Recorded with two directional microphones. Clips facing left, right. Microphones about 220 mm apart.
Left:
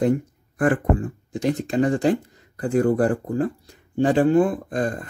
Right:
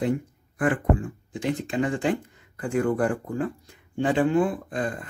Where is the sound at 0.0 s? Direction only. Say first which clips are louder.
Left 5 dB; 45° left (ahead or behind).